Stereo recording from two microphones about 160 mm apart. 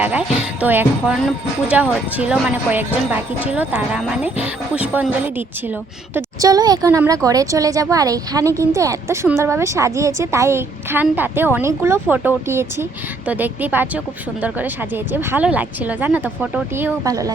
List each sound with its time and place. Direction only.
0.0 s a woman's voice: 10° right (ahead or behind)
6.1 s a woman's voice: 20° right (ahead or behind)